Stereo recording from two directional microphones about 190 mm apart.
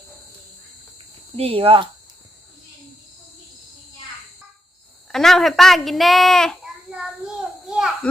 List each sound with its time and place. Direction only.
1.4 s speech: 30° right (ahead or behind)
5.1 s a child's voice: centre (ahead or behind)
7.7 s a sound: 5° right (ahead or behind)